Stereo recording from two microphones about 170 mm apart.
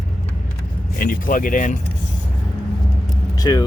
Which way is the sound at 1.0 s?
55° left (ahead or behind).